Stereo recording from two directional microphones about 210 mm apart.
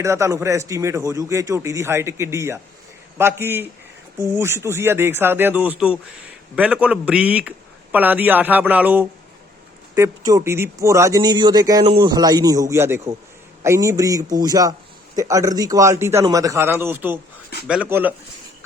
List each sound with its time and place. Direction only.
0.0 s a man's voice: 15° right (ahead or behind)